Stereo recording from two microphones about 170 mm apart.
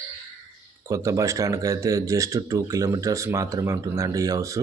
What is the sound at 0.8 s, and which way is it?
Speech, 20° right (ahead or behind).